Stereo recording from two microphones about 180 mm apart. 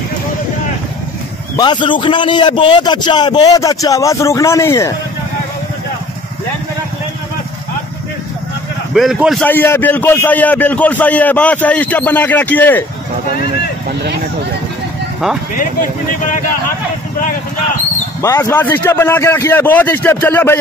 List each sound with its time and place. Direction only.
1.6 s a man's voice: 25° left (ahead or behind)
8.9 s a man's voice: centre (ahead or behind)
9.4 s a man's voice: 10° left (ahead or behind)
18.2 s a man's voice: 15° left (ahead or behind)